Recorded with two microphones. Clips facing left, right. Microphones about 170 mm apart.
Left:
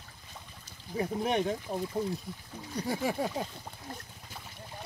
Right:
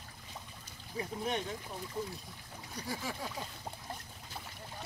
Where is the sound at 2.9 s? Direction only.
60° left (ahead or behind).